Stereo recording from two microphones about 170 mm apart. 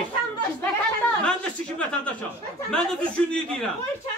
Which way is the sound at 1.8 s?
5° left (ahead or behind).